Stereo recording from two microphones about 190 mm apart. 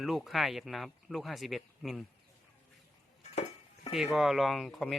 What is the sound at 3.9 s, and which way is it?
Speech, centre (ahead or behind).